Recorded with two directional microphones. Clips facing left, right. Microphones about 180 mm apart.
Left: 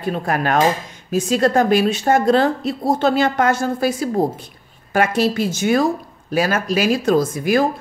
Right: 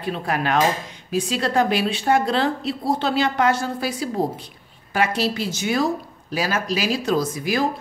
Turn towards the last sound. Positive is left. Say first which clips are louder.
# left 5 dB
turn(degrees=50)  # may be behind; listen again after turning